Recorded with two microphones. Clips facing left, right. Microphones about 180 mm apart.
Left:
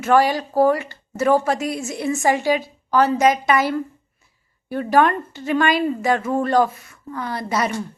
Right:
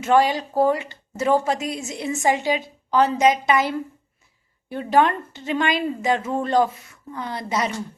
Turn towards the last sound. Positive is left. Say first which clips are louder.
# left 2 dB
turn(degrees=-20)  # may be behind; listen again after turning